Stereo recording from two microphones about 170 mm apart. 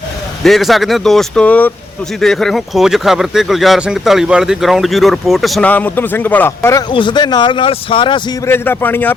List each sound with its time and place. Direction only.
0.4 s speech: centre (ahead or behind); by 6.8 s 15° left (ahead or behind)
6.9 s speech: 30° left (ahead or behind)
8.4 s a man's voice: 15° left (ahead or behind)